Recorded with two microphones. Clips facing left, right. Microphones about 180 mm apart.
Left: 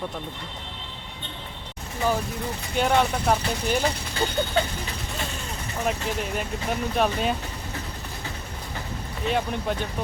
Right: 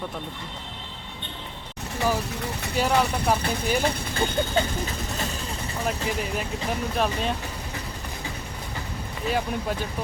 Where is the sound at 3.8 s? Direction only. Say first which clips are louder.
Right 1 dB; 55° right (ahead or behind).